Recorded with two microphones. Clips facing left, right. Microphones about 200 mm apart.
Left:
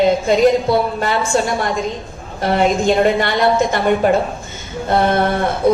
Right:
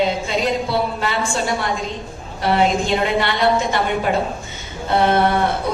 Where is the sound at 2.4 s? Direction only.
50° left (ahead or behind).